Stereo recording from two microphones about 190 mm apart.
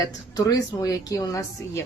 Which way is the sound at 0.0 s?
20° left (ahead or behind).